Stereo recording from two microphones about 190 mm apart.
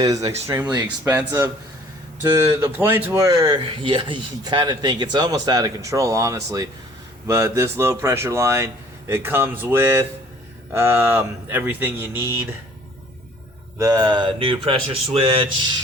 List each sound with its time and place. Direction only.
0.0 s speech: 20° right (ahead or behind)
13.7 s speech: 20° right (ahead or behind)